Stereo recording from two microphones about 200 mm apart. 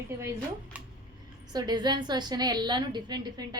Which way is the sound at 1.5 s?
20° right (ahead or behind).